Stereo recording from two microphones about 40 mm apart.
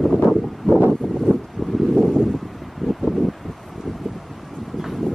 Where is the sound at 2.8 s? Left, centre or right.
Centre.